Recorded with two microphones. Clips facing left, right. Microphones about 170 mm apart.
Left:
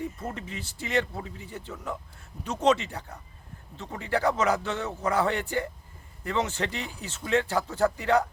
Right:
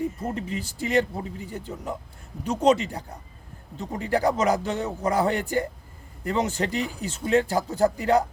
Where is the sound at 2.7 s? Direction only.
35° right (ahead or behind).